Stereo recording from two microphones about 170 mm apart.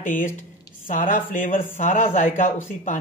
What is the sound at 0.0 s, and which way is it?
A woman's voice, 50° left (ahead or behind).